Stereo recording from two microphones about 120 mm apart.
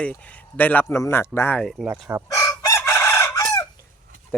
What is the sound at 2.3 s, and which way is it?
Chicken, 30° left (ahead or behind).